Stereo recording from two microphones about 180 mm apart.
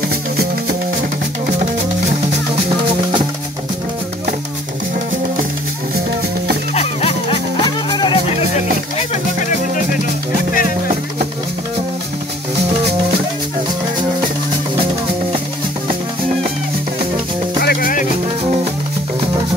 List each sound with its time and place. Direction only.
6.7 s music: 35° left (ahead or behind)
17.6 s music: 55° left (ahead or behind)